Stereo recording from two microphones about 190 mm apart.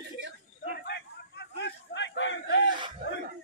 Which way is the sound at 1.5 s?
65° left (ahead or behind).